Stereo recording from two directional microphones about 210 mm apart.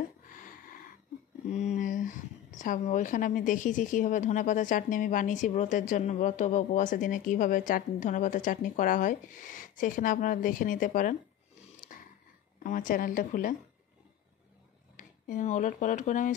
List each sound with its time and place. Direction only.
1.5 s a woman's voice: 35° left (ahead or behind)
11.9 s a sound: 40° left (ahead or behind)
12.6 s a woman's voice: 40° left (ahead or behind)
15.0 s speech: 40° left (ahead or behind)